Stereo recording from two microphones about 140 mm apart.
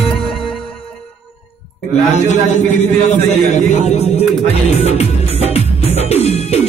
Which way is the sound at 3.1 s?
55° left (ahead or behind).